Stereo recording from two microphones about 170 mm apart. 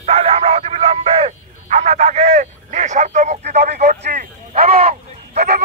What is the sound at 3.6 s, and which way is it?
Radio, 45° right (ahead or behind).